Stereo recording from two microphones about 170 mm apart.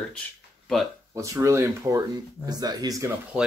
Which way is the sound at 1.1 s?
20° right (ahead or behind).